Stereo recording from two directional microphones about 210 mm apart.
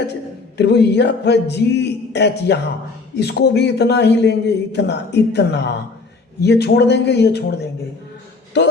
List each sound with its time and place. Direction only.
0.5 s a man's voice: 55° left (ahead or behind)